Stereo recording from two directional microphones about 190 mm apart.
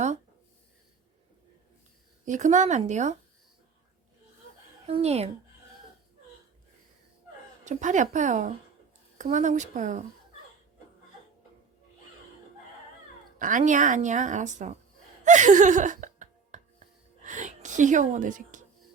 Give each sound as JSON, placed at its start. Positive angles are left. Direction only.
{"t": 2.2, "sound": "a woman's voice", "side_deg": -40}
{"t": 4.9, "sound": "a woman's voice", "side_deg": -30}
{"t": 7.6, "sound": "a woman's voice", "side_deg": -40}
{"t": 13.4, "sound": "a woman's voice", "side_deg": -40}
{"t": 15.2, "sound": "gasp", "side_deg": -40}
{"t": 17.2, "sound": "a sound", "side_deg": -40}